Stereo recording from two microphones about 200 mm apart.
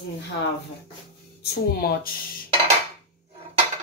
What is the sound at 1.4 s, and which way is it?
Speech, 45° left (ahead or behind).